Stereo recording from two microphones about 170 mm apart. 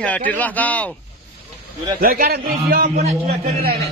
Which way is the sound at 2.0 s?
55° right (ahead or behind).